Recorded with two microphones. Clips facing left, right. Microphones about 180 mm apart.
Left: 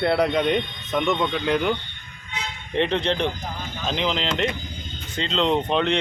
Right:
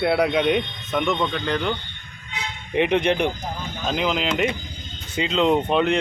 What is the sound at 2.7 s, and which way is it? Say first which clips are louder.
Speech: right 3 dB; 15° right (ahead or behind).